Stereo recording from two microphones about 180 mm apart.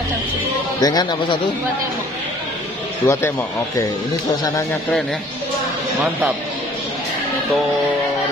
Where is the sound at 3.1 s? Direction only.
15° left (ahead or behind).